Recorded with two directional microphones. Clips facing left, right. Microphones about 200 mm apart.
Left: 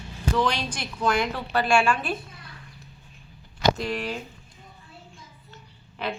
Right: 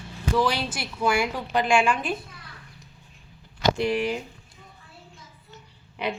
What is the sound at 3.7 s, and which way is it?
Speech, 10° right (ahead or behind).